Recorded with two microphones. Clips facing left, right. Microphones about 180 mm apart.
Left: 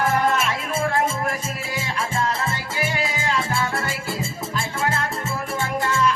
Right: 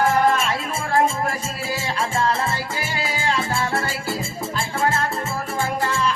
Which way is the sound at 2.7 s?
30° right (ahead or behind).